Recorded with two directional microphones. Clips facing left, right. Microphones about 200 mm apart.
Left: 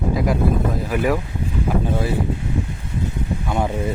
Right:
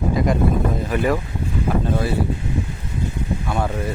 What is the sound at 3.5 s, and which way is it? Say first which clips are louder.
Speech: left 2 dB; 20° left (ahead or behind).